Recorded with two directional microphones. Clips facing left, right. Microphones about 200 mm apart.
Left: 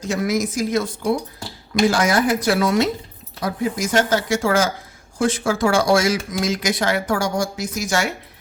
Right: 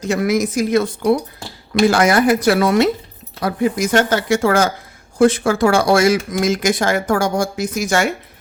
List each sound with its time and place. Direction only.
0.0 s speech: 65° right (ahead or behind)